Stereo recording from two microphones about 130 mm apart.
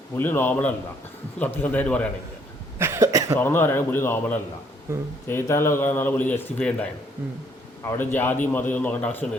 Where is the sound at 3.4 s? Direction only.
15° left (ahead or behind).